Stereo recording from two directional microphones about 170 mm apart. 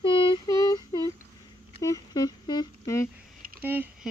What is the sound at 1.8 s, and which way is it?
Humming, 20° left (ahead or behind).